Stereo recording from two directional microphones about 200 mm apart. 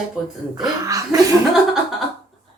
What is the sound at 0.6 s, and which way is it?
Speech, 15° right (ahead or behind).